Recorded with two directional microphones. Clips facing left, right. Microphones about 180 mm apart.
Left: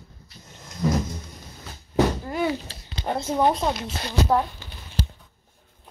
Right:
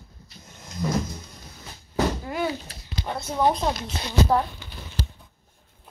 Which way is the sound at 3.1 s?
40° left (ahead or behind).